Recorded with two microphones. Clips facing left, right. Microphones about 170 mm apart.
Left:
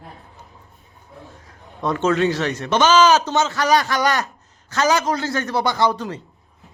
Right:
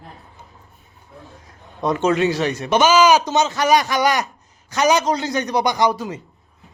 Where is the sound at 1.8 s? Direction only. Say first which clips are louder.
Right 1 dB; 15° right (ahead or behind).